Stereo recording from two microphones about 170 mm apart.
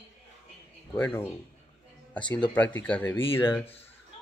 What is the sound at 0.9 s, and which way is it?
Speech, 10° left (ahead or behind).